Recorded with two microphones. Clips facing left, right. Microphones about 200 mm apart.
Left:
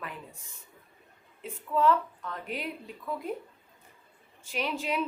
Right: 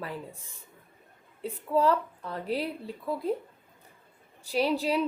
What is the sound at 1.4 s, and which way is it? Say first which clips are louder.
A woman's voice: right 1 dB; 35° right (ahead or behind).